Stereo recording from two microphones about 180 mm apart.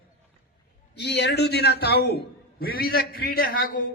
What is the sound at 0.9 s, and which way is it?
A man's voice, 70° left (ahead or behind).